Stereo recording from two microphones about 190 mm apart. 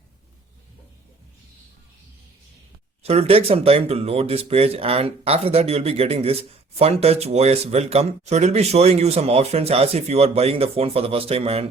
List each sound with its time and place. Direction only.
3.0 s speech: 30° right (ahead or behind)